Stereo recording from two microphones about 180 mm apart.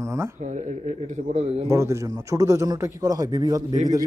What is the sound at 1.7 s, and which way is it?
Speech, 15° right (ahead or behind).